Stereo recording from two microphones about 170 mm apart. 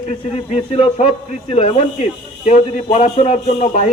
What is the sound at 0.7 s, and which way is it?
Speech, 35° left (ahead or behind).